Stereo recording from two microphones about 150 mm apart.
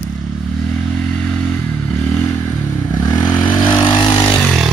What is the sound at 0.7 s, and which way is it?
Motorcycle, 5° left (ahead or behind).